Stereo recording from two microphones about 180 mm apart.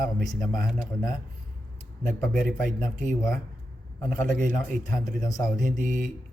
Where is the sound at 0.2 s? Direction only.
Centre (ahead or behind).